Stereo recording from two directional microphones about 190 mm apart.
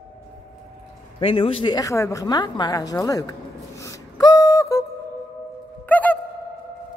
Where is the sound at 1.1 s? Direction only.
30° left (ahead or behind).